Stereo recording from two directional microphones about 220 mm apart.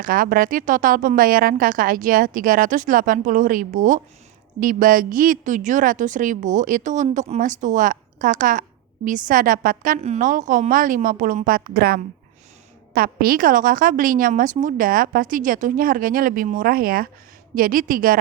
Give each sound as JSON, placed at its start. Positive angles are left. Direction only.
{"t": 0.0, "sound": "a woman's voice", "side_deg": -40}